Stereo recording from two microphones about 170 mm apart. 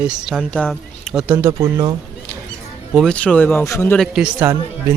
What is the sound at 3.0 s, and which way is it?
Speech, 5° left (ahead or behind).